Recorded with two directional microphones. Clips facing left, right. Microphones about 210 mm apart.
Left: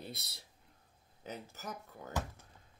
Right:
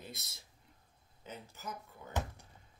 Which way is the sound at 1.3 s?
90° left.